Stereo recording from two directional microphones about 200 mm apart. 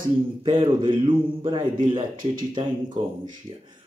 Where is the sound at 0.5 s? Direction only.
25° right (ahead or behind).